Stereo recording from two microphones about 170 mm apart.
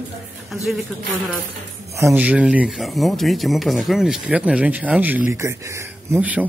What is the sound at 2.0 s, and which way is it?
A man's voice, 10° right (ahead or behind).